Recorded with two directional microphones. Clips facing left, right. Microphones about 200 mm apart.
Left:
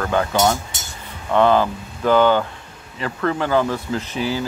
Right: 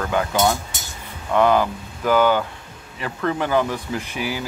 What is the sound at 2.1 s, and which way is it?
Speech, 10° right (ahead or behind).